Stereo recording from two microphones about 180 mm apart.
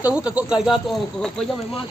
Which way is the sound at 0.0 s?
5° right (ahead or behind).